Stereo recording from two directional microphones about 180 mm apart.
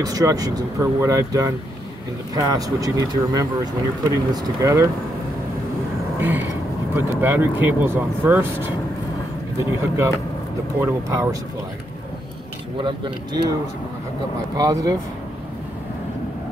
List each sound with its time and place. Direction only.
0.0 s speech: 20° right (ahead or behind)
7.0 s speech: 15° right (ahead or behind)
12.7 s speech: 25° right (ahead or behind)
14.6 s speech: 20° right (ahead or behind)